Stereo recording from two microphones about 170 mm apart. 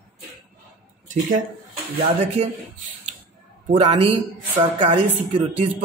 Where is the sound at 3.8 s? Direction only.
35° right (ahead or behind).